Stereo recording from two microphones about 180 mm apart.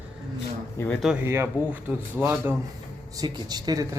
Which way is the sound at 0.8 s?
15° left (ahead or behind).